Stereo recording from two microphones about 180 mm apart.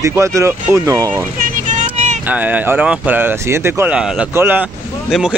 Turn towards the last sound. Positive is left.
turn(degrees=-5)  # may be behind; listen again after turning